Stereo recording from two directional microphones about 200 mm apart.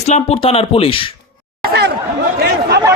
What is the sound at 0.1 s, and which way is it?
Speech, 30° left (ahead or behind).